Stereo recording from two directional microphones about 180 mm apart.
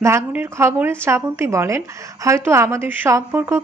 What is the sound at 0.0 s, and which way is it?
A woman's voice, 10° right (ahead or behind).